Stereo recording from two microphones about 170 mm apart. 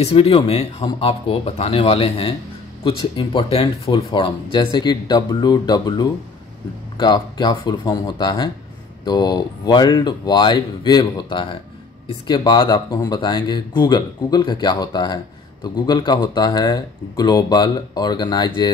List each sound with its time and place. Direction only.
0.0 s speech: 35° left (ahead or behind)